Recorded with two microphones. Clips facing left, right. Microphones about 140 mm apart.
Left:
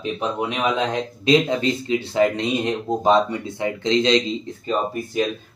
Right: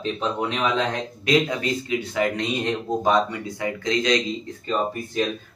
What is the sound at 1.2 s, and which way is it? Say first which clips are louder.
Speech: left 4 dB; 25° left (ahead or behind).